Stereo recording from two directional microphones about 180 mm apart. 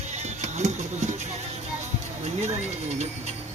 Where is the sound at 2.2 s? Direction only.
40° right (ahead or behind).